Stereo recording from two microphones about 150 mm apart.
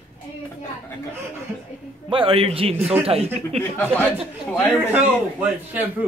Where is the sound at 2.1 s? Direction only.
35° right (ahead or behind).